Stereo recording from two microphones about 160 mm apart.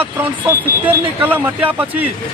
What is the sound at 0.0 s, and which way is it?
Speech, 10° right (ahead or behind).